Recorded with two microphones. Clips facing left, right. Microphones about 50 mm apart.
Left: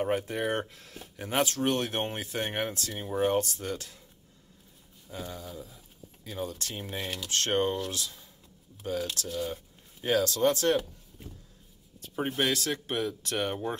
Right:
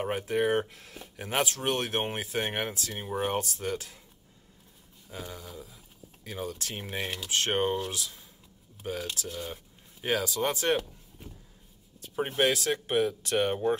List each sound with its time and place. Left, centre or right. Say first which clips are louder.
0.0 s speech: right 1 dB; centre
5.1 s speech: left 2 dB; centre
5.5 s speech: left 2 dB; centre
6.7 s speech: right 1 dB; right
7.2 s speech: left 1 dB; centre
8.0 s speech: even; centre
12.0 s speech: right 2 dB; centre